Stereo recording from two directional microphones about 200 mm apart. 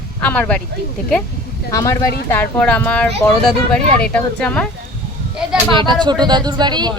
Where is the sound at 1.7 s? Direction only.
15° left (ahead or behind).